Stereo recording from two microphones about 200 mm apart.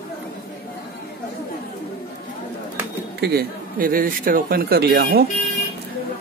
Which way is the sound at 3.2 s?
50° right (ahead or behind).